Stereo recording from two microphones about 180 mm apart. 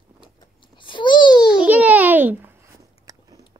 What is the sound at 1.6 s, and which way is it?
Babbling, 10° right (ahead or behind).